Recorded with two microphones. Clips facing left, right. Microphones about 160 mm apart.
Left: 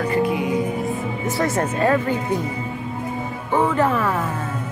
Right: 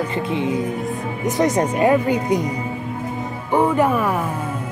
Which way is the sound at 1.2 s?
20° right (ahead or behind).